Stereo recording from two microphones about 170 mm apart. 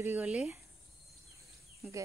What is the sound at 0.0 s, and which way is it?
Speech, 10° right (ahead or behind).